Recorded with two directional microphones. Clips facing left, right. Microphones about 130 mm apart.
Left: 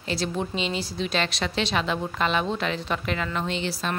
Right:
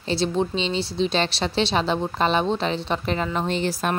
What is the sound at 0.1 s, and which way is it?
A woman's voice, 30° right (ahead or behind).